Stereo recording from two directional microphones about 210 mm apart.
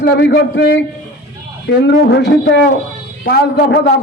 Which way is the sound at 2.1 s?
55° left (ahead or behind).